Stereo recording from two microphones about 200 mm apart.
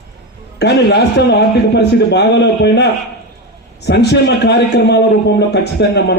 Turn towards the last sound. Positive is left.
turn(degrees=60)  # may be behind; listen again after turning